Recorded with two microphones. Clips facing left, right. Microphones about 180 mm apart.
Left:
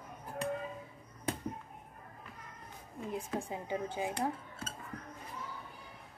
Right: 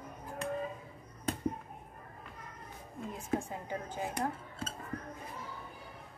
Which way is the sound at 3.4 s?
15° left (ahead or behind).